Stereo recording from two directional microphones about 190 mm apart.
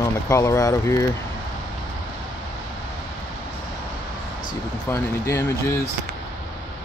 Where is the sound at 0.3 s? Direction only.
15° left (ahead or behind).